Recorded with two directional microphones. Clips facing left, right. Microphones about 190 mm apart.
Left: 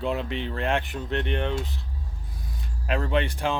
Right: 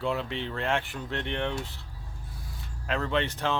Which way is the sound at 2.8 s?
15° left (ahead or behind).